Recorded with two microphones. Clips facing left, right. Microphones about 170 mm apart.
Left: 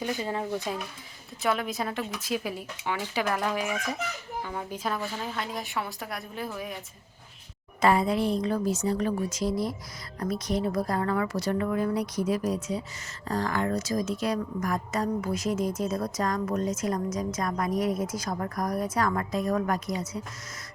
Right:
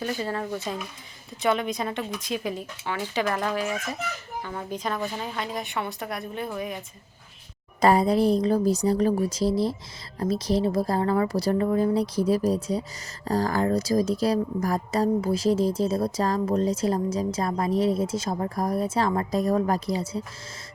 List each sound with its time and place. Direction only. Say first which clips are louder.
0.0 s speech: right 1 dB; 15° left (ahead or behind)
1.4 s a woman's voice: right 3 dB; centre (ahead or behind)
7.8 s a woman's voice: right 4 dB; 35° right (ahead or behind)